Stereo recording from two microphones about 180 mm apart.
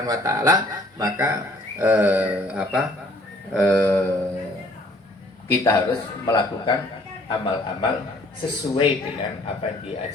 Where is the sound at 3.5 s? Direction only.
10° left (ahead or behind).